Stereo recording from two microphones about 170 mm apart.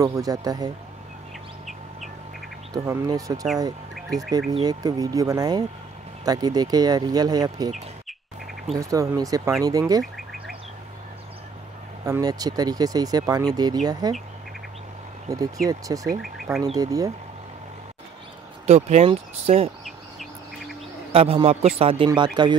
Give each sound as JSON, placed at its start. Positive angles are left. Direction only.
{"t": 0.0, "sound": "speech", "side_deg": -20}
{"t": 2.7, "sound": "speech", "side_deg": -20}
{"t": 3.9, "sound": "bird", "side_deg": 0}
{"t": 4.6, "sound": "speech", "side_deg": -20}
{"t": 8.7, "sound": "speech", "side_deg": -20}
{"t": 12.0, "sound": "speech", "side_deg": -20}
{"t": 15.2, "sound": "speech", "side_deg": -20}
{"t": 16.2, "sound": "speech", "side_deg": 0}
{"t": 16.7, "sound": "speech", "side_deg": -20}
{"t": 18.7, "sound": "speech", "side_deg": -40}
{"t": 19.8, "sound": "bird", "side_deg": 0}
{"t": 21.1, "sound": "speech", "side_deg": -35}